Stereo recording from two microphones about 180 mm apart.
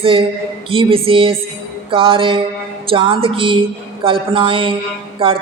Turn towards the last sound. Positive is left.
turn(degrees=-30)  # may be behind; listen again after turning